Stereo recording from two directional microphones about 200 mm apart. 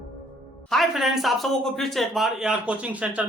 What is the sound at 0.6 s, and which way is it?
A man's voice, centre (ahead or behind).